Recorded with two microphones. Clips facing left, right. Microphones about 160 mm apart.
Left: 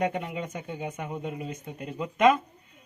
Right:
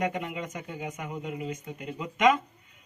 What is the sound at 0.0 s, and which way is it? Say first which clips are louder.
Speech: left 2 dB; 30° left (ahead or behind).